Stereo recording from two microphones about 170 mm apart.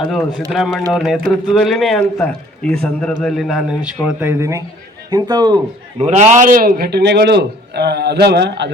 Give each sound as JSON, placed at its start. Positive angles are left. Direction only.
{"t": 0.0, "sound": "a man's voice", "side_deg": 0}
{"t": 6.0, "sound": "a man's voice", "side_deg": -40}